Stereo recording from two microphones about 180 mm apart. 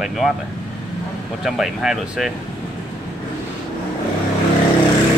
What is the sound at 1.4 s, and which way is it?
Speech, centre (ahead or behind).